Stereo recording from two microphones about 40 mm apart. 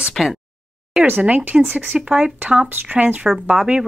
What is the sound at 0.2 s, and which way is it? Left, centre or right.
Speech, centre.